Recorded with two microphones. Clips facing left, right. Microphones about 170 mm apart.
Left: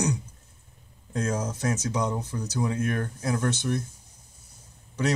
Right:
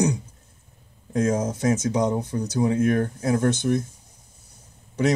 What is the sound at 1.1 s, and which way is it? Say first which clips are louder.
Speech: right 6 dB; 20° right (ahead or behind).